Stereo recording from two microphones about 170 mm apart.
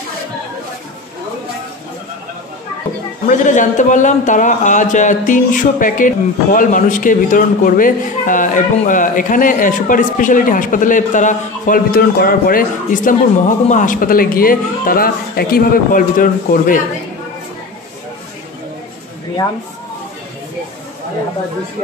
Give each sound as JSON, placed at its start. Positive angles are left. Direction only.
{"t": 3.3, "sound": "a man's voice", "side_deg": 50}